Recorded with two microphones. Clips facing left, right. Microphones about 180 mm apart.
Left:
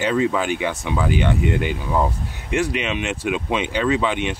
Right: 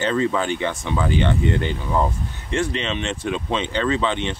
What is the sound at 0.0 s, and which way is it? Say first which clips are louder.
Speech: left 1 dB; 10° left (ahead or behind).